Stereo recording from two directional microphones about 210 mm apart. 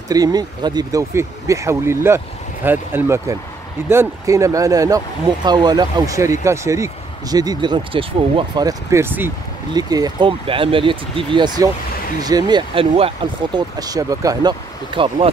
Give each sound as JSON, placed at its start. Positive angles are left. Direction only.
{"t": 0.1, "sound": "speech", "side_deg": -20}